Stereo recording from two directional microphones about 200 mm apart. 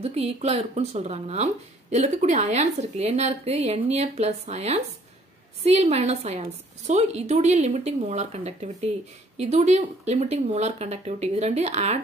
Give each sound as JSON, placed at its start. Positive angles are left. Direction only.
{"t": 0.0, "sound": "speech", "side_deg": -30}